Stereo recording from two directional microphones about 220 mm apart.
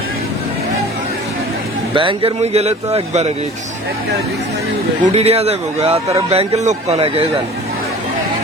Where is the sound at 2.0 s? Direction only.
25° right (ahead or behind).